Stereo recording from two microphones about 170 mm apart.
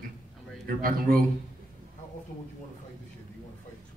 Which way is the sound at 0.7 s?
55° right (ahead or behind).